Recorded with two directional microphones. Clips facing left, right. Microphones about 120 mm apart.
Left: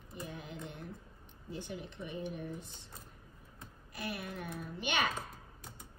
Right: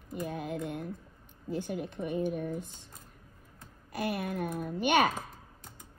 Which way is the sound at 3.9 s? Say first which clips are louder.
Right 8 dB; 55° right (ahead or behind).